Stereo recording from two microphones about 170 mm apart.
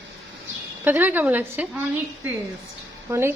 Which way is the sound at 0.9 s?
10° right (ahead or behind).